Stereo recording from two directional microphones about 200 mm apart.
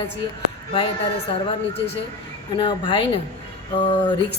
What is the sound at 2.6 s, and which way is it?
Speech, 25° left (ahead or behind).